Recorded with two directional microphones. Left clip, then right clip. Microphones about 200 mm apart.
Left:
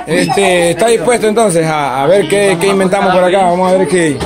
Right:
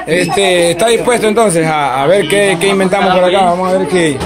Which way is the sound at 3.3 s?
20° left (ahead or behind).